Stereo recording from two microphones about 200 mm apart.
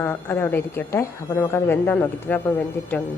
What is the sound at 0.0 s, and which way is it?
Speech, 10° left (ahead or behind).